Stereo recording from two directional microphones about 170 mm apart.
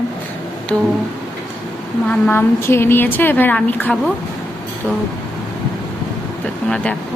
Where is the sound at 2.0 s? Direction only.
5° left (ahead or behind).